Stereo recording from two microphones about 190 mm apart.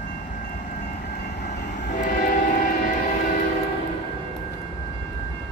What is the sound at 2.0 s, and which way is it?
Train, 45° left (ahead or behind).